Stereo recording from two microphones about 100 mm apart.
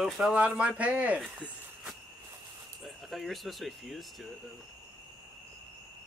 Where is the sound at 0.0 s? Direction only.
5° right (ahead or behind).